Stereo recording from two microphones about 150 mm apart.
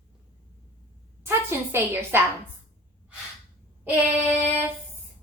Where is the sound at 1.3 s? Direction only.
15° right (ahead or behind).